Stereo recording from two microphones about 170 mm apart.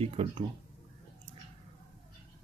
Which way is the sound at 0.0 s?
35° right (ahead or behind).